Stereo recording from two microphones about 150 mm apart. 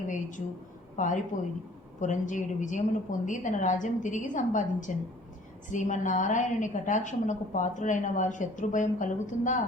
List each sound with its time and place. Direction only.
0.1 s a woman's voice: 60° left (ahead or behind)